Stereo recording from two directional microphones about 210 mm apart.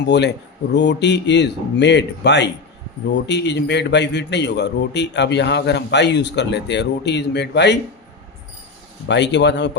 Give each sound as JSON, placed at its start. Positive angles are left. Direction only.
{"t": 0.0, "sound": "a man's voice", "side_deg": 55}
{"t": 9.0, "sound": "a man's voice", "side_deg": 55}